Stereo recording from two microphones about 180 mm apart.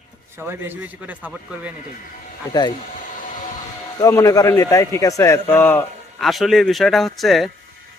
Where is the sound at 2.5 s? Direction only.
25° left (ahead or behind).